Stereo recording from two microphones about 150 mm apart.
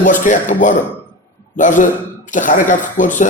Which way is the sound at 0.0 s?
60° left (ahead or behind).